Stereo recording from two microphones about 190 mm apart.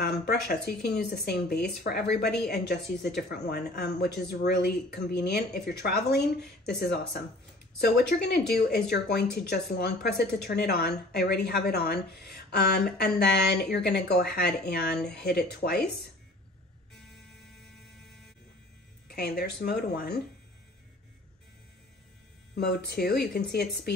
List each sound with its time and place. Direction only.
0.0 s speech: 60° left (ahead or behind)
19.0 s speech: 55° left (ahead or behind)
22.6 s speech: 60° left (ahead or behind)